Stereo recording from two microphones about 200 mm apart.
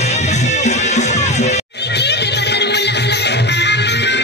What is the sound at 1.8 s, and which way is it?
Music, 55° left (ahead or behind).